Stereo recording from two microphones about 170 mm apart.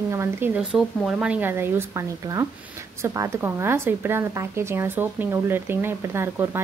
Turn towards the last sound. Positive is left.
turn(degrees=-15)  # may be behind; listen again after turning